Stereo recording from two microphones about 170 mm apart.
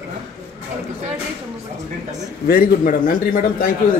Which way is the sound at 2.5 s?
60° left (ahead or behind).